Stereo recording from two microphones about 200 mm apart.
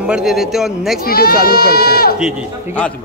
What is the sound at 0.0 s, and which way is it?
A woman's voice, 5° right (ahead or behind).